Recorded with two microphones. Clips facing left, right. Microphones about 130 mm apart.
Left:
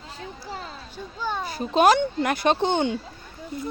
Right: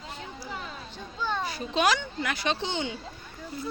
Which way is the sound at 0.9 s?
10° left (ahead or behind).